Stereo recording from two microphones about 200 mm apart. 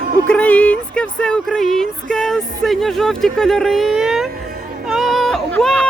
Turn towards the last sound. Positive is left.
turn(degrees=5)  # may be behind; listen again after turning